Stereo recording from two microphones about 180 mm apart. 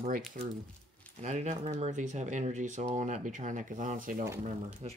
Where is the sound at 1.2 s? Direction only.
40° right (ahead or behind).